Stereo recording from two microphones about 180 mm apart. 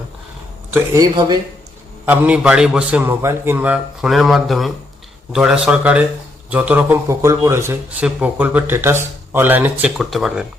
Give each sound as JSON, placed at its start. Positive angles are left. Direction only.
{"t": 0.7, "sound": "speech", "side_deg": -20}
{"t": 2.0, "sound": "a man's voice", "side_deg": -10}